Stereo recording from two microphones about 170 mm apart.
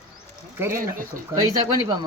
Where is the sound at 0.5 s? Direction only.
15° right (ahead or behind).